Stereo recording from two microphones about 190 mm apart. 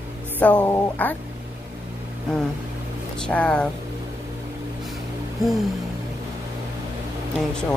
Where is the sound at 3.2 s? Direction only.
5° left (ahead or behind).